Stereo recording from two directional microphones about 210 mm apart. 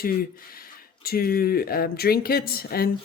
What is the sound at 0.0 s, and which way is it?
A woman's voice, 45° left (ahead or behind).